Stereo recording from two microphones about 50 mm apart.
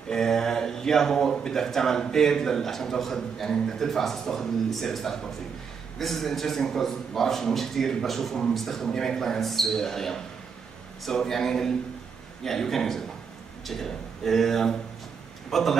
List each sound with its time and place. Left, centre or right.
0.1 s speech: centre